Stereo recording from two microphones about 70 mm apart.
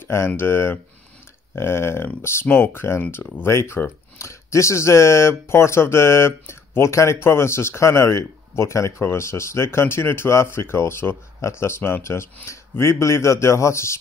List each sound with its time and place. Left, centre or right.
0.0 s speech: left